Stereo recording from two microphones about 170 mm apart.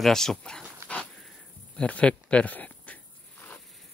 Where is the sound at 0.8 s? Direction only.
15° right (ahead or behind).